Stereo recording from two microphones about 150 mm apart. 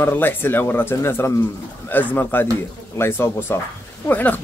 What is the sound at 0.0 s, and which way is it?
Speech, 15° left (ahead or behind).